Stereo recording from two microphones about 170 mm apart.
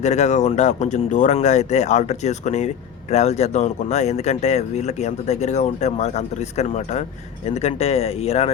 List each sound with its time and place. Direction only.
0.0 s speech: 40° left (ahead or behind)